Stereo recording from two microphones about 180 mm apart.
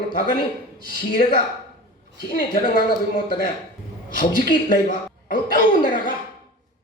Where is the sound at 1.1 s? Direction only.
50° left (ahead or behind).